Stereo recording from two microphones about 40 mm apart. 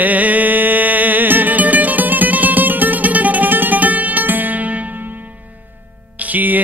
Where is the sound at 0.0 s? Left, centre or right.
Right.